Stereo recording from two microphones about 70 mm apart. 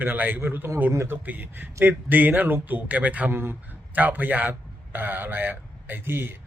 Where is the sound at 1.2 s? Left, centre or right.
Right.